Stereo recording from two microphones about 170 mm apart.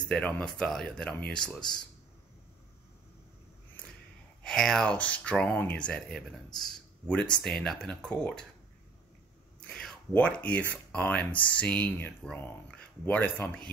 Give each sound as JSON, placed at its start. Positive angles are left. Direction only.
{"t": 0.1, "sound": "speech", "side_deg": 5}
{"t": 4.4, "sound": "speech", "side_deg": 5}
{"t": 9.7, "sound": "speech", "side_deg": 5}